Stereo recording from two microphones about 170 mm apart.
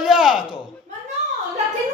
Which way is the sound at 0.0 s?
5° right (ahead or behind).